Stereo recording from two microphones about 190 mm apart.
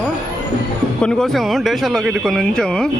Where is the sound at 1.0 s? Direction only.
5° left (ahead or behind).